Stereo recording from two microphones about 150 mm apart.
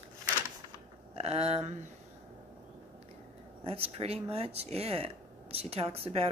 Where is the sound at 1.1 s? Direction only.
45° right (ahead or behind).